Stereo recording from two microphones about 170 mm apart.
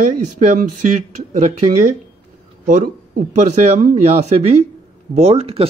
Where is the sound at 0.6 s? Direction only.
45° right (ahead or behind).